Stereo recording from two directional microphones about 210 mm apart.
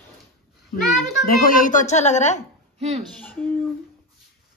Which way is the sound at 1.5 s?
40° left (ahead or behind).